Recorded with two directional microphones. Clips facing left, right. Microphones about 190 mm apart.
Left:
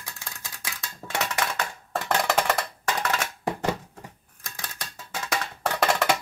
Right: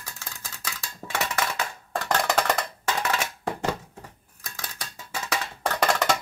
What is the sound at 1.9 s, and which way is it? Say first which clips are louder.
Wood block: even; 5° left (ahead or behind).